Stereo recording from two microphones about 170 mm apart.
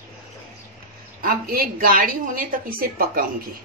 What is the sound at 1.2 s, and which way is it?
Speech, 55° right (ahead or behind).